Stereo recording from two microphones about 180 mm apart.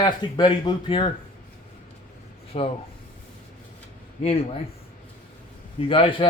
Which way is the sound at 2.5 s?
35° left (ahead or behind).